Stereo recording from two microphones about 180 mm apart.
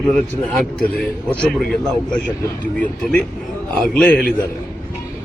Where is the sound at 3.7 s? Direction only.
Centre (ahead or behind).